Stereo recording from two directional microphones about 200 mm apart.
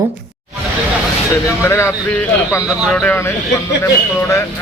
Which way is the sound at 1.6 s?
10° left (ahead or behind).